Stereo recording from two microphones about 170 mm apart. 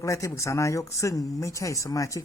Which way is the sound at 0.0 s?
20° left (ahead or behind).